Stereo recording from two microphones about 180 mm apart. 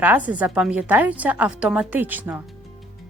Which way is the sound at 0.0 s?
10° right (ahead or behind).